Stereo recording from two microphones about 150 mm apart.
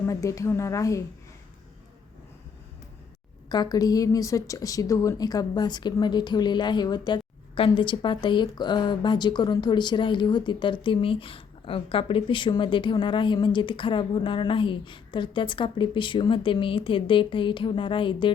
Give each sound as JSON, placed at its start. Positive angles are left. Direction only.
{"t": 0.1, "sound": "a woman's voice", "side_deg": 20}
{"t": 3.5, "sound": "a woman's voice", "side_deg": 25}